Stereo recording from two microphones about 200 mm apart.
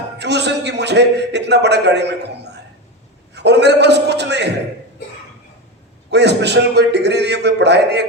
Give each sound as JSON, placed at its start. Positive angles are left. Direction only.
{"t": 0.2, "sound": "a man's voice", "side_deg": -60}
{"t": 6.1, "sound": "a man's voice", "side_deg": -60}